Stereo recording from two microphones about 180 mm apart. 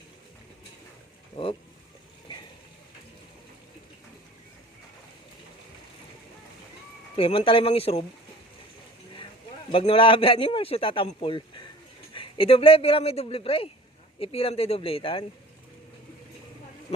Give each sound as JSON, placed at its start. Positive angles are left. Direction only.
{"t": 7.2, "sound": "speech", "side_deg": 30}
{"t": 9.7, "sound": "a man's voice", "side_deg": 30}